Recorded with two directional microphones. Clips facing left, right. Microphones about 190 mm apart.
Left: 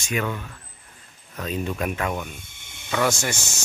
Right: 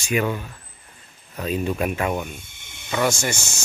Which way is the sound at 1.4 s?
15° right (ahead or behind).